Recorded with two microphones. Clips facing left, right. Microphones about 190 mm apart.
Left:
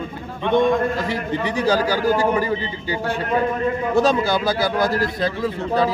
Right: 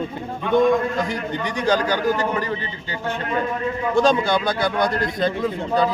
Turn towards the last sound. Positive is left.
turn(degrees=5)  # may be behind; listen again after turning